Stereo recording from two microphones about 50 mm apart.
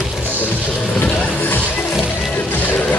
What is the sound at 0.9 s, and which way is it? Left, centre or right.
Music, left.